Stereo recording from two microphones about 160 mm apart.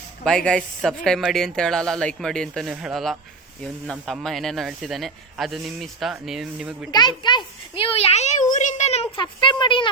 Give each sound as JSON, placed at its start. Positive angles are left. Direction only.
{"t": 0.3, "sound": "speech", "side_deg": 5}
{"t": 6.9, "sound": "a child's voice", "side_deg": 25}